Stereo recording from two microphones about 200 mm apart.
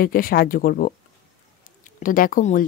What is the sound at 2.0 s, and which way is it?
Speech, 45° left (ahead or behind).